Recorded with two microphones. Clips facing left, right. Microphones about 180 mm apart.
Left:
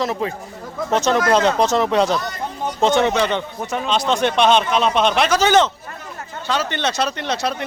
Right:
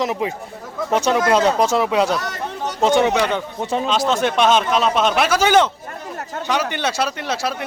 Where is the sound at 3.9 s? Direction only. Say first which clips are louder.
Left 2 dB; 5° right (ahead or behind).